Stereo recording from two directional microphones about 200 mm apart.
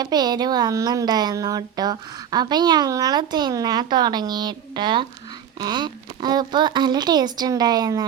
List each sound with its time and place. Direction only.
0.0 s a woman's voice: 20° right (ahead or behind)